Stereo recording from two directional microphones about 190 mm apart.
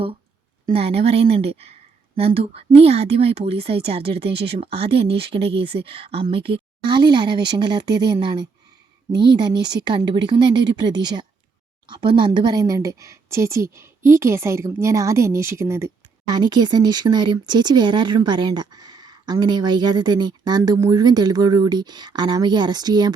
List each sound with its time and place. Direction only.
0.7 s a woman's voice: 30° right (ahead or behind)